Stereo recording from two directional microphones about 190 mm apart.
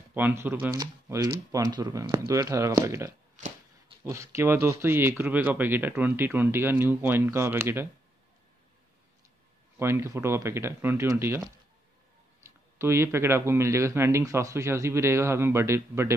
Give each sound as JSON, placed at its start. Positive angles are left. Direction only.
{"t": 0.1, "sound": "speech", "side_deg": -10}
{"t": 9.8, "sound": "speech", "side_deg": -15}